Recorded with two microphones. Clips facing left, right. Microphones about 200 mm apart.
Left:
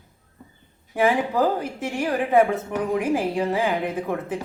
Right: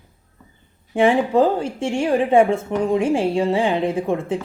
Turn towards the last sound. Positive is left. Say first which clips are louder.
# right 5 dB
turn(degrees=-25)  # may be behind; listen again after turning